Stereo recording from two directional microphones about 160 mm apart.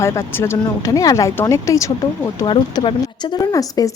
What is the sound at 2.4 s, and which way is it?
Speech, 30° left (ahead or behind).